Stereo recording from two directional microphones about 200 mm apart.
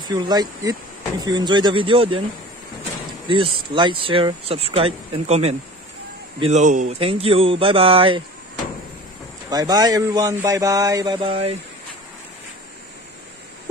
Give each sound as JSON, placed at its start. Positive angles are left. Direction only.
{"t": 0.1, "sound": "speech", "side_deg": -20}
{"t": 3.3, "sound": "speech", "side_deg": -25}
{"t": 9.5, "sound": "speech", "side_deg": -20}